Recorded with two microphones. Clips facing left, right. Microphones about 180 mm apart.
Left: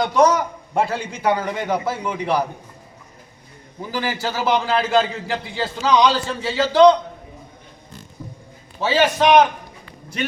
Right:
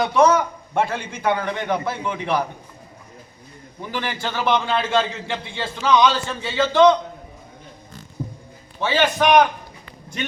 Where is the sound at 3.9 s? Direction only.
5° left (ahead or behind).